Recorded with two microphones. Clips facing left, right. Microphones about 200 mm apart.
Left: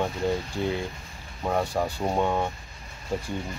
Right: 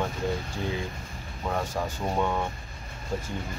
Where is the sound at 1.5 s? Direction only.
20° left (ahead or behind).